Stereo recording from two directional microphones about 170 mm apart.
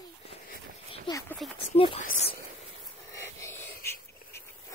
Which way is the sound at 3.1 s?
15° left (ahead or behind).